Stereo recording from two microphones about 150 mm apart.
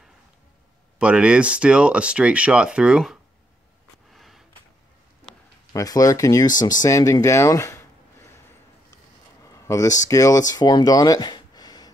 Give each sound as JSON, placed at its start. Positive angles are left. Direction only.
{"t": 0.9, "sound": "speech", "side_deg": -5}
{"t": 4.1, "sound": "a sound", "side_deg": 0}
{"t": 5.7, "sound": "speech", "side_deg": 25}
{"t": 9.4, "sound": "speech", "side_deg": 20}